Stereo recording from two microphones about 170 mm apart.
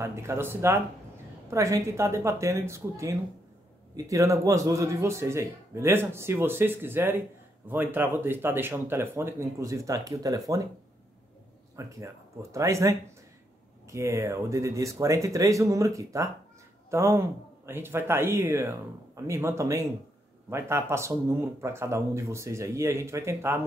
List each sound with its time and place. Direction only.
0.0 s speech: 15° right (ahead or behind)
11.7 s speech: 20° right (ahead or behind)